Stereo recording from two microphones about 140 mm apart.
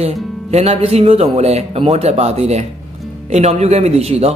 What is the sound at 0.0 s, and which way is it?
Speech, 50° right (ahead or behind).